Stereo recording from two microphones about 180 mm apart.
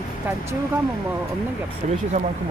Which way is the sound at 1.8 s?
45° right (ahead or behind).